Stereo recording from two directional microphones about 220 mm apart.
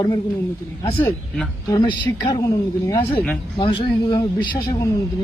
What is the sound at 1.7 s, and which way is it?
Speech, 20° left (ahead or behind).